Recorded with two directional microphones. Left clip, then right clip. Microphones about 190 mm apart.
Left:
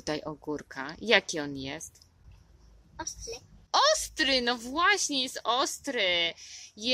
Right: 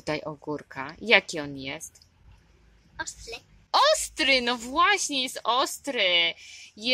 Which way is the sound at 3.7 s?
10° right (ahead or behind).